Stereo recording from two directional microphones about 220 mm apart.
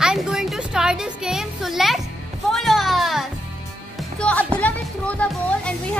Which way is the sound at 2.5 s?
Centre (ahead or behind).